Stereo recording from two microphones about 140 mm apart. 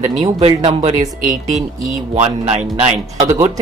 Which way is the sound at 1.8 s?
60° right (ahead or behind).